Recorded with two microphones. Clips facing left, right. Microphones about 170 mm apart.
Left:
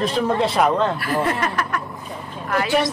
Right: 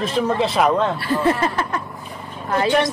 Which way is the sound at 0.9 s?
30° right (ahead or behind).